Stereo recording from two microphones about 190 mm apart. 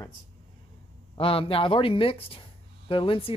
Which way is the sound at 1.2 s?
30° left (ahead or behind).